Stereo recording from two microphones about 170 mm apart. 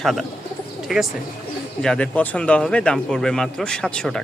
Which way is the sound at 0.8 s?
Centre (ahead or behind).